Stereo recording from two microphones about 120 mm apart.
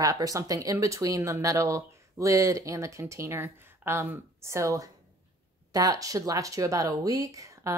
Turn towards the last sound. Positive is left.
turn(degrees=-25)  # may be behind; listen again after turning